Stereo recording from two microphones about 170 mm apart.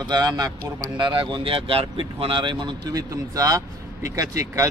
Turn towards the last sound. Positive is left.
turn(degrees=-20)  # may be behind; listen again after turning